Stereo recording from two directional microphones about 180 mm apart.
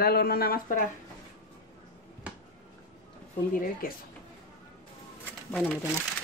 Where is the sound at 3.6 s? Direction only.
50° left (ahead or behind).